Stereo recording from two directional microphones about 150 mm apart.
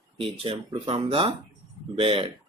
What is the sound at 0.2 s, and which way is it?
Speech, 35° right (ahead or behind).